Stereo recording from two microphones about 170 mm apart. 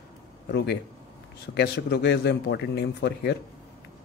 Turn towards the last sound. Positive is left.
turn(degrees=75)  # may be behind; listen again after turning